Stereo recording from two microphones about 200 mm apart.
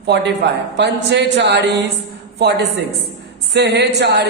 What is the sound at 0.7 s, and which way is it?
Speech, 60° right (ahead or behind).